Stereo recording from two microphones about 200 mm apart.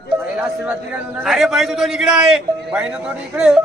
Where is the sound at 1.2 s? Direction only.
Centre (ahead or behind).